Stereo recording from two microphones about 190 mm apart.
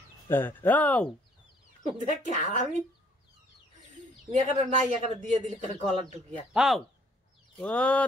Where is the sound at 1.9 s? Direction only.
40° right (ahead or behind).